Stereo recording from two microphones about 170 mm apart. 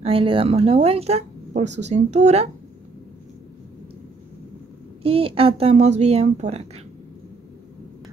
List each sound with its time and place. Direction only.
0.0 s speech: 30° right (ahead or behind)
5.0 s speech: 35° right (ahead or behind)